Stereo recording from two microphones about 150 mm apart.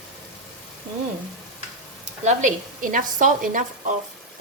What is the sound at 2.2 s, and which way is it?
A woman's voice, 60° right (ahead or behind).